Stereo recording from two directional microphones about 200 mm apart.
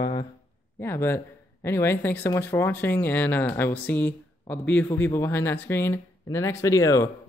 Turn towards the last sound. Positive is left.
turn(degrees=15)  # may be behind; listen again after turning